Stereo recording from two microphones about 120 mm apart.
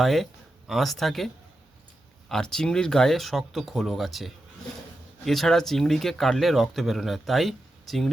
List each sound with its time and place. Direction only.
0.0 s speech: centre (ahead or behind)
2.3 s speech: 5° left (ahead or behind)